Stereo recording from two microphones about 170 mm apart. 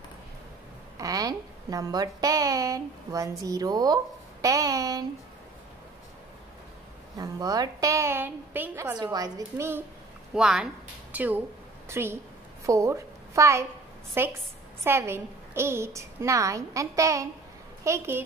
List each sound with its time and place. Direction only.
0.9 s a woman's voice: 20° right (ahead or behind)
7.2 s a woman's voice: 20° right (ahead or behind)
8.9 s a woman's voice: 25° right (ahead or behind)
10.3 s a woman's voice: 5° right (ahead or behind)